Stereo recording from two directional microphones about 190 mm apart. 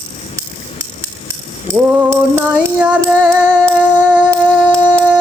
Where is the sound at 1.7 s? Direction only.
10° right (ahead or behind).